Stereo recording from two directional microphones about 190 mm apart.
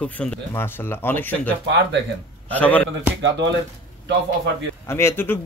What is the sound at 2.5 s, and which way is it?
Speech, 10° left (ahead or behind).